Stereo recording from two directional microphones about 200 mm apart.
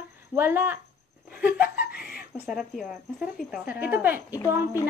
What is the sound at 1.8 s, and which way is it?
Chuckle, 50° left (ahead or behind).